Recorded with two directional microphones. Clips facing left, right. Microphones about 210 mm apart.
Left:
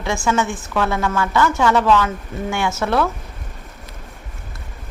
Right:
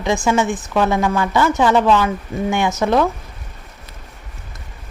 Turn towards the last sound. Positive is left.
turn(degrees=-15)  # may be behind; listen again after turning